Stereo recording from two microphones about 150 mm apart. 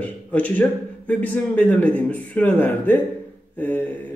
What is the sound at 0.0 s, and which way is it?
A man's voice, 10° left (ahead or behind).